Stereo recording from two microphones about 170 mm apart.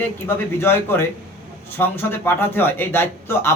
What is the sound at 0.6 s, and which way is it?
A man's voice, 15° left (ahead or behind).